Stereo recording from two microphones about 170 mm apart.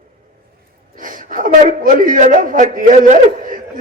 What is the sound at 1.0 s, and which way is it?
A man's voice, 50° right (ahead or behind).